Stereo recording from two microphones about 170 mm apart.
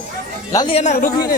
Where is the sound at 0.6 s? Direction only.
40° left (ahead or behind); by 1.3 s 60° left (ahead or behind).